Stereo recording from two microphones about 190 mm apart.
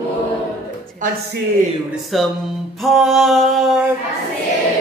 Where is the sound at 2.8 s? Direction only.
Centre (ahead or behind).